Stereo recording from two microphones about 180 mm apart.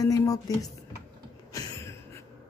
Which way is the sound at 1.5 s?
15° left (ahead or behind).